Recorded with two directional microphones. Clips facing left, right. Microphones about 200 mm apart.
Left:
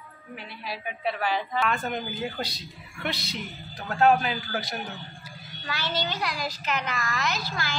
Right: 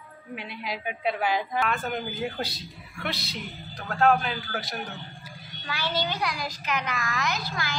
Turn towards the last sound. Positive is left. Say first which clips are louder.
# even
turn(degrees=-15)  # may be behind; listen again after turning